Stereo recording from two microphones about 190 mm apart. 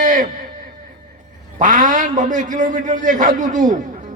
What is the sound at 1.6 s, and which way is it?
A man's voice, 40° right (ahead or behind).